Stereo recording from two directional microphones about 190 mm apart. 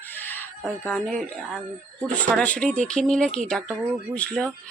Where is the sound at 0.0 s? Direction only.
10° left (ahead or behind).